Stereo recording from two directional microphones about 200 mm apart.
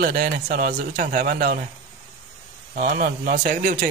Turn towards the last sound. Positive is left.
turn(degrees=-40)  # may be behind; listen again after turning